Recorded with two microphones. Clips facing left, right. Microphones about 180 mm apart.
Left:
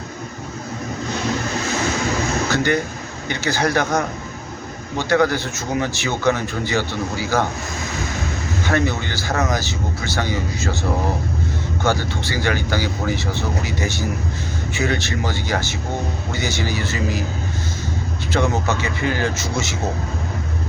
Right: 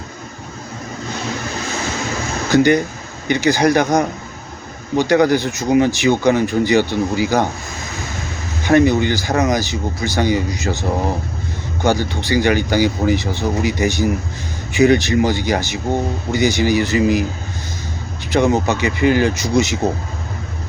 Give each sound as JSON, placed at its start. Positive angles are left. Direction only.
{"t": 2.5, "sound": "speech", "side_deg": -15}
{"t": 8.6, "sound": "speech", "side_deg": -15}
{"t": 11.8, "sound": "speech", "side_deg": -15}
{"t": 18.3, "sound": "speech", "side_deg": -15}